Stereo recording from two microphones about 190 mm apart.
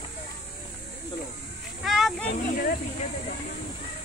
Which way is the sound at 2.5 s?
45° left (ahead or behind).